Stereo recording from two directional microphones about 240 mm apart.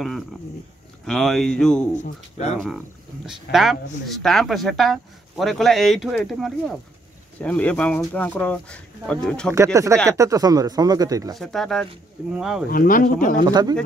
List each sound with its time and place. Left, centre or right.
0.0 s speech: centre
2.0 s speech: left
3.5 s speech: left
4.1 s speech: centre
10.0 s speech: centre
11.3 s speech: centre
12.6 s speech: left
13.5 s speech: centre